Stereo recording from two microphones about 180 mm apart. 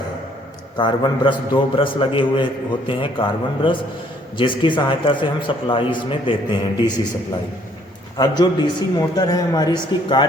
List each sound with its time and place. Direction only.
0.8 s a man's voice: 25° left (ahead or behind)
8.2 s a man's voice: 25° left (ahead or behind)